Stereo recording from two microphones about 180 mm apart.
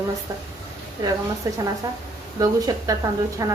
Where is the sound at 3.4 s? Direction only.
20° right (ahead or behind).